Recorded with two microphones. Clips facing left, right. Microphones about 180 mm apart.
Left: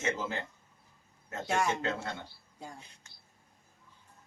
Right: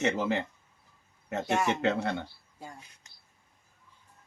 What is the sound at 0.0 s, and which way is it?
Speech, 70° right (ahead or behind).